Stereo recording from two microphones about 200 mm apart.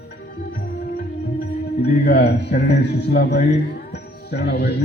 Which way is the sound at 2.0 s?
55° left (ahead or behind).